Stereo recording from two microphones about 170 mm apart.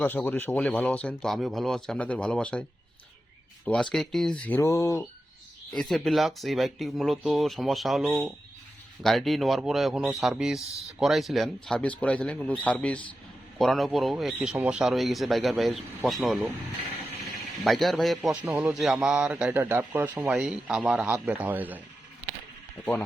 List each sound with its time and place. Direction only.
0.0 s speech: 10° left (ahead or behind)
3.9 s speech: centre (ahead or behind)
5.7 s speech: centre (ahead or behind)
17.6 s speech: centre (ahead or behind)
18.4 s a man's voice: 15° right (ahead or behind)
18.7 s a man's voice: 5° right (ahead or behind)